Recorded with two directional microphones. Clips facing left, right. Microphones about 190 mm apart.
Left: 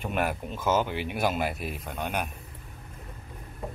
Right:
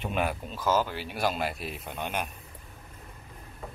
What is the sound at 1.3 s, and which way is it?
Speech, 5° left (ahead or behind).